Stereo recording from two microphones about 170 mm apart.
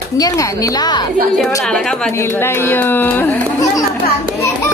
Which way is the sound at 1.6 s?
5° left (ahead or behind).